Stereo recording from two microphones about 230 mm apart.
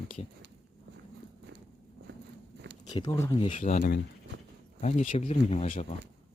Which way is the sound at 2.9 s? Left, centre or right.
Centre.